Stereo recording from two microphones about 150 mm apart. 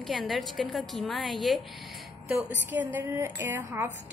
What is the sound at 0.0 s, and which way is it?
A woman's voice, centre (ahead or behind).